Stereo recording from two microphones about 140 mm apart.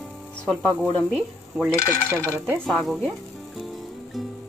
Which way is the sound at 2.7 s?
Centre (ahead or behind).